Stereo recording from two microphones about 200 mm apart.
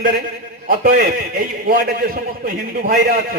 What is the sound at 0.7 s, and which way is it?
A man's voice, 45° right (ahead or behind).